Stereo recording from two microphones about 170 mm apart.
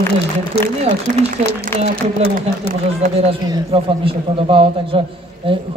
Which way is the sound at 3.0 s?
40° right (ahead or behind).